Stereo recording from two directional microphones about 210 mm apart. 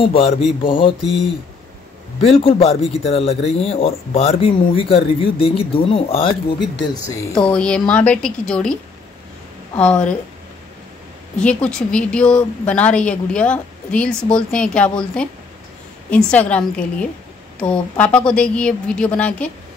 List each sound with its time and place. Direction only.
0.6 s a man's voice: 25° left (ahead or behind)
1.0 s a woman's voice: centre (ahead or behind)
2.2 s a man's voice: 25° left (ahead or behind)
7.3 s a woman's voice: 5° left (ahead or behind)
9.8 s a woman's voice: 5° left (ahead or behind)
11.3 s a woman's voice: 5° left (ahead or behind)